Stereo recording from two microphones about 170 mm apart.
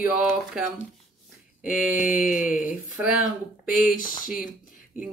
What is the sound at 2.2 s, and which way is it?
Speech, 50° left (ahead or behind).